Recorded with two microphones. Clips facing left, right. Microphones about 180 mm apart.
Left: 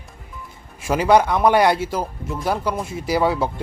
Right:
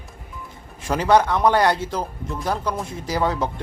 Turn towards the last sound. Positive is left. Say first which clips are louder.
# left 3 dB
turn(degrees=10)  # may be behind; listen again after turning